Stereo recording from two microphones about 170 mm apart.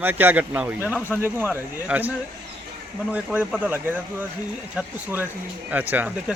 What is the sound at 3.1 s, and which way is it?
Speech, 5° right (ahead or behind).